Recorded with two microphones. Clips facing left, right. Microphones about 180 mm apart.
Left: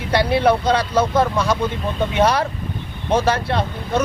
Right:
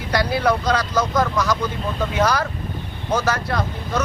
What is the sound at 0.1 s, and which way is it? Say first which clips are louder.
Speech: left 3 dB; 25° left (ahead or behind).